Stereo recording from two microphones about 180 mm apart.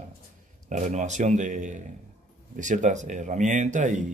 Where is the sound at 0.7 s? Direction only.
40° right (ahead or behind).